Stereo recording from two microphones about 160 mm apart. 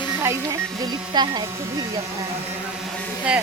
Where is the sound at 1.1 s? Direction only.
25° right (ahead or behind).